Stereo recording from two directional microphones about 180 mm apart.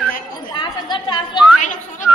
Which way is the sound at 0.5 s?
25° left (ahead or behind).